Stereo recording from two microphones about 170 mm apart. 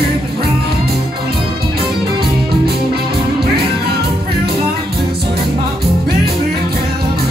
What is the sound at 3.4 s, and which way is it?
Music, 65° right (ahead or behind).